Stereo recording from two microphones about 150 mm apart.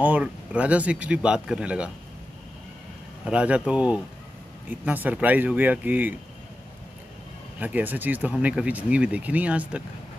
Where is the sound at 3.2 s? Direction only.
10° right (ahead or behind).